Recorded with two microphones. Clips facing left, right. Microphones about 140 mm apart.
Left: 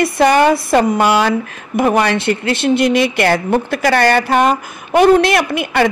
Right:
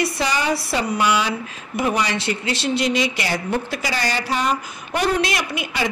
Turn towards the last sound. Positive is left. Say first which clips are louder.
# left 9 dB
turn(degrees=55)  # may be behind; listen again after turning